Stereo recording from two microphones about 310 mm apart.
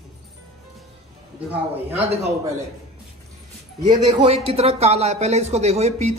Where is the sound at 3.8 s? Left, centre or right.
Centre.